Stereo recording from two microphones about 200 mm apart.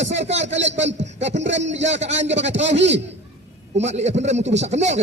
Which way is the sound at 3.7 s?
35° right (ahead or behind).